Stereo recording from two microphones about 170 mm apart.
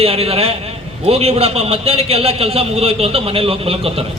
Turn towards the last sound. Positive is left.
turn(degrees=-35)  # may be behind; listen again after turning